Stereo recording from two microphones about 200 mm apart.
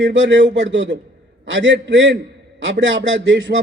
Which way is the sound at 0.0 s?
65° right (ahead or behind).